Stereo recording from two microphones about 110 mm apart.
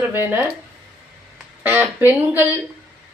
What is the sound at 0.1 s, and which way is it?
Speech, 20° right (ahead or behind).